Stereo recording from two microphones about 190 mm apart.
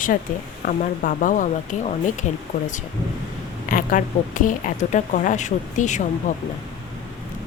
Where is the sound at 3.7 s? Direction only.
45° left (ahead or behind).